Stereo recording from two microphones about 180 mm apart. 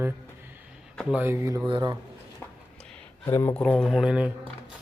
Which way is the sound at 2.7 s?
5° left (ahead or behind).